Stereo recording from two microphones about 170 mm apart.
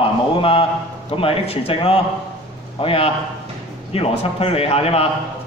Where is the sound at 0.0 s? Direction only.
30° left (ahead or behind).